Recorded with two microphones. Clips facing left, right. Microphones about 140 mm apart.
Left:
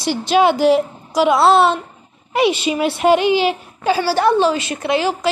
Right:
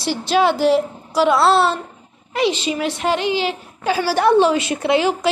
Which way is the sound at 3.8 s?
10° right (ahead or behind).